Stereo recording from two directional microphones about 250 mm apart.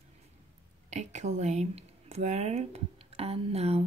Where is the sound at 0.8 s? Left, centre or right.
Right.